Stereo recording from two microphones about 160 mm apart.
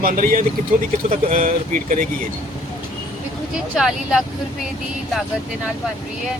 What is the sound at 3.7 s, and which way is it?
Speech, centre (ahead or behind).